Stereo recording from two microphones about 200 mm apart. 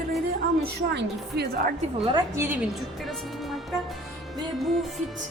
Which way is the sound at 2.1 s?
15° right (ahead or behind).